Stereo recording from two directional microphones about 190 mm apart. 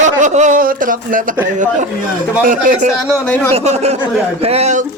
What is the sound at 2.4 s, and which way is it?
Speech, 45° right (ahead or behind).